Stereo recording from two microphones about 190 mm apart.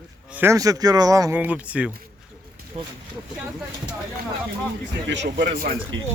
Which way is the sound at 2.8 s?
30° right (ahead or behind).